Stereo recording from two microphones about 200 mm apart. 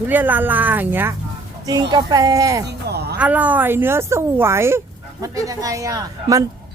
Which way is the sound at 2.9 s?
55° right (ahead or behind).